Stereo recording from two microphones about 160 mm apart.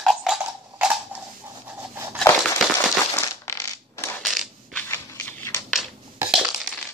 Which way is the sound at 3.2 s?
20° left (ahead or behind).